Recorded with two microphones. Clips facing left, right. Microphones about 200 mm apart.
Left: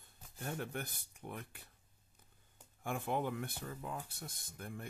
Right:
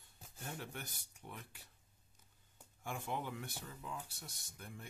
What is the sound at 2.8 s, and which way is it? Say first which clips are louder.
Speech: left 5 dB; 55° left (ahead or behind).